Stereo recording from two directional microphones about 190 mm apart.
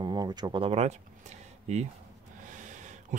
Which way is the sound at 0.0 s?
20° right (ahead or behind).